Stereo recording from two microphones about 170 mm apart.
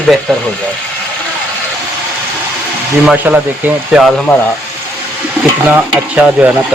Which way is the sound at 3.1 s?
10° right (ahead or behind).